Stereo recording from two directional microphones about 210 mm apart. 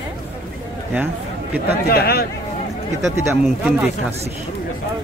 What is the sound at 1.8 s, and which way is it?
Speech, 45° left (ahead or behind).